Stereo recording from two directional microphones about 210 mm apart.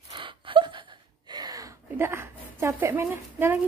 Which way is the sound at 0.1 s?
25° right (ahead or behind).